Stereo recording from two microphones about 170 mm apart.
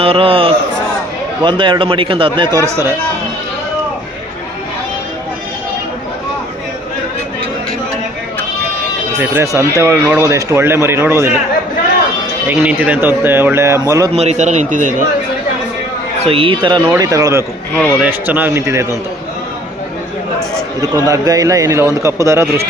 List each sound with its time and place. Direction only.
0.0 s a man's voice: 35° right (ahead or behind)
2.6 s speech: 15° right (ahead or behind)
9.1 s speech: 10° right (ahead or behind)
12.5 s speech: 10° right (ahead or behind)
14.2 s speech: 40° right (ahead or behind)
16.2 s a man's voice: 35° right (ahead or behind); by 18.9 s 15° right (ahead or behind)
21.1 s a man's voice: 20° right (ahead or behind)